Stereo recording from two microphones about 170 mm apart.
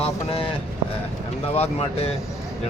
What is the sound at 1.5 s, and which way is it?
Speech, 35° left (ahead or behind).